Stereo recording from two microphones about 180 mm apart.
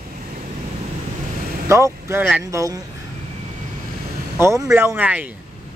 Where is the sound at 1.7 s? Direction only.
15° right (ahead or behind).